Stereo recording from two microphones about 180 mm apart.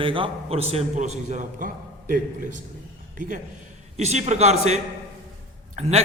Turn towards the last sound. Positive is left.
turn(degrees=-40)  # may be behind; listen again after turning